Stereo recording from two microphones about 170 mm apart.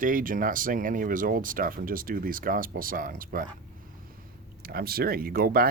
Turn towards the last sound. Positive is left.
turn(degrees=-60)  # may be behind; listen again after turning